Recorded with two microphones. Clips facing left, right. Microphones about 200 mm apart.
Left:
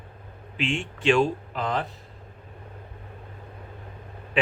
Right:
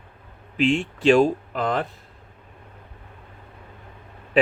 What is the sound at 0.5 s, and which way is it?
A man's voice, 40° right (ahead or behind).